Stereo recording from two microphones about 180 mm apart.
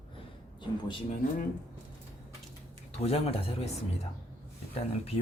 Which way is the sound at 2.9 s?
35° left (ahead or behind).